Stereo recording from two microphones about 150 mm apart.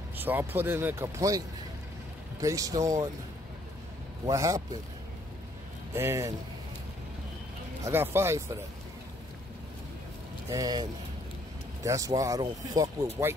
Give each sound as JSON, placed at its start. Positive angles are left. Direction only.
{"t": 0.2, "sound": "speech", "side_deg": -15}
{"t": 2.4, "sound": "speech", "side_deg": -20}
{"t": 4.3, "sound": "speech", "side_deg": -20}
{"t": 5.9, "sound": "speech", "side_deg": -20}
{"t": 7.8, "sound": "speech", "side_deg": -15}
{"t": 10.5, "sound": "speech", "side_deg": -25}